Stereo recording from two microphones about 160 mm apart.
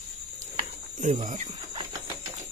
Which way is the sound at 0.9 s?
50° right (ahead or behind).